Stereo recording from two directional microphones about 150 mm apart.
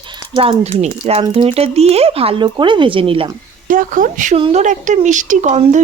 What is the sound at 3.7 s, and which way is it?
Speech, 65° right (ahead or behind).